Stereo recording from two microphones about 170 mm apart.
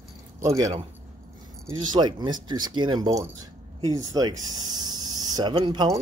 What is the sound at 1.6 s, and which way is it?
Speech, 25° right (ahead or behind).